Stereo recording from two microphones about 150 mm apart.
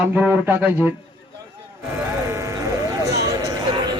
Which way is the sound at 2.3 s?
20° right (ahead or behind).